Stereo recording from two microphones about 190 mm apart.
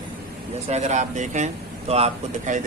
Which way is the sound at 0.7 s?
35° right (ahead or behind).